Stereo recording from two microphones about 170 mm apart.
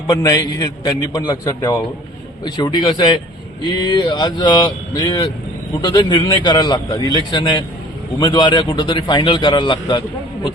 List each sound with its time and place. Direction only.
0.1 s a man's voice: 20° left (ahead or behind)